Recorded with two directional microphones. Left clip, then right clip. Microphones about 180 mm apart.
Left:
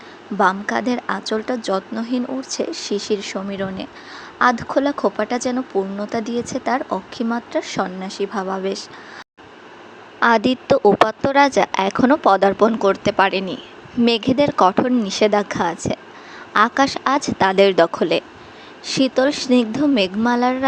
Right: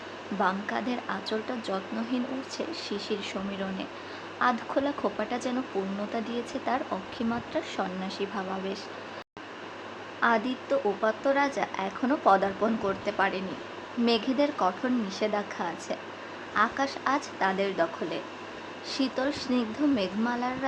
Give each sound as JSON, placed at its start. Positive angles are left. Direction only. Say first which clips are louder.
{"t": 0.3, "sound": "a woman's voice", "louder": "left 11 dB", "side_deg": 40}
{"t": 10.2, "sound": "a woman's voice", "louder": "left 10 dB", "side_deg": 60}